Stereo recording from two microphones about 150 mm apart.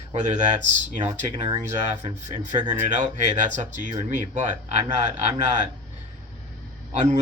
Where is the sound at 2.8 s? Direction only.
55° right (ahead or behind).